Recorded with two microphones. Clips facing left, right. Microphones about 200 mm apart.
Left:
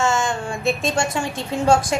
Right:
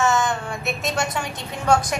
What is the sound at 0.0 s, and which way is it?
A woman's voice, 30° left (ahead or behind).